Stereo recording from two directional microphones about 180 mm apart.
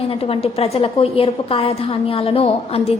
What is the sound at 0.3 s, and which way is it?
A woman's voice, 35° left (ahead or behind).